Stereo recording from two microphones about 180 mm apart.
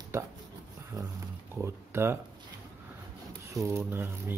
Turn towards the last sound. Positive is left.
turn(degrees=-15)  # may be behind; listen again after turning